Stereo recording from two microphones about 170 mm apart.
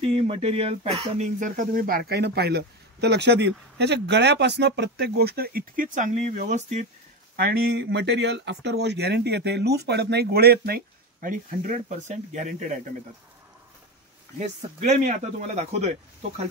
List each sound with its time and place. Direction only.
0.0 s speech: 35° right (ahead or behind)
7.3 s speech: 65° right (ahead or behind); by 12.6 s 45° right (ahead or behind)
14.4 s speech: 45° right (ahead or behind)